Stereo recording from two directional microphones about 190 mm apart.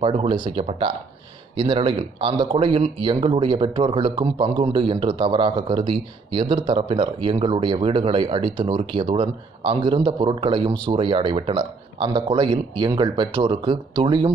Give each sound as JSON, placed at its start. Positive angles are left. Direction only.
{"t": 0.0, "sound": "speech", "side_deg": -30}